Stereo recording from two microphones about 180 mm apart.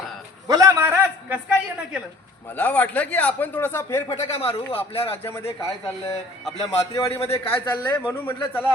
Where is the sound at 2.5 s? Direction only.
10° left (ahead or behind).